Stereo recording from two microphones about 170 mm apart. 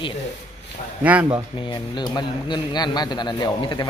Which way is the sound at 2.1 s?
25° left (ahead or behind).